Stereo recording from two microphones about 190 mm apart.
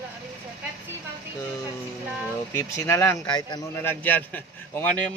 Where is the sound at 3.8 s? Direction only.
10° left (ahead or behind).